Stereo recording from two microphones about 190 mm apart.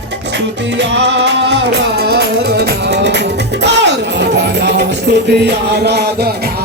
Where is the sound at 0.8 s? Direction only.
70° right (ahead or behind).